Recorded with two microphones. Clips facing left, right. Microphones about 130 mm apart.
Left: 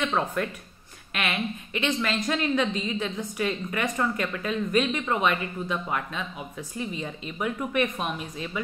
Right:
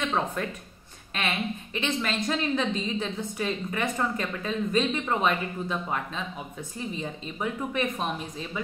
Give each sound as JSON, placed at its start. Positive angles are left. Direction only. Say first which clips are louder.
{"t": 0.1, "sound": "a woman's voice", "louder": "left 1 dB", "side_deg": -25}